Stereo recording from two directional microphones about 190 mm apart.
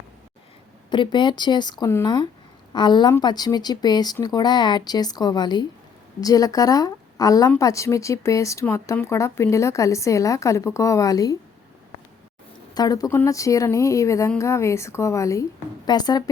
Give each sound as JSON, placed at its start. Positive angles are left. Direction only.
{"t": 0.9, "sound": "speech", "side_deg": 25}
{"t": 12.7, "sound": "speech", "side_deg": 20}